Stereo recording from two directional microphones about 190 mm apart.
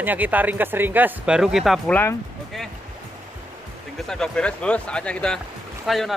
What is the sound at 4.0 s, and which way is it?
Speech, 5° left (ahead or behind).